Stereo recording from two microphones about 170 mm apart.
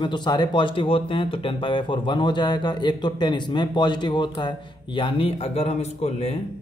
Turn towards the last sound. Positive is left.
turn(degrees=35)  # may be behind; listen again after turning